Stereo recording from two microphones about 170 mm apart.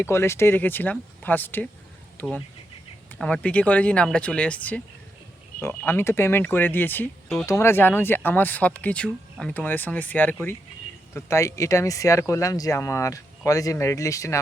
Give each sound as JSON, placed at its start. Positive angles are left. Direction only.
{"t": 0.0, "sound": "speech", "side_deg": 15}